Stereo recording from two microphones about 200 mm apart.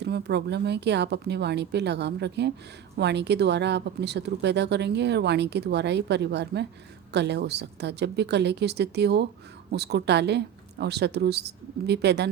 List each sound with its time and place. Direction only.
0.0 s speech: 55° right (ahead or behind)